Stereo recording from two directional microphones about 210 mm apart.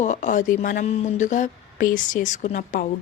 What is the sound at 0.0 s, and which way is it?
Speech, 35° left (ahead or behind).